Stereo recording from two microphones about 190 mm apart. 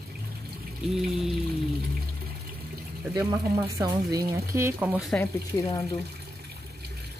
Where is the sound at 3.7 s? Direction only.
15° right (ahead or behind).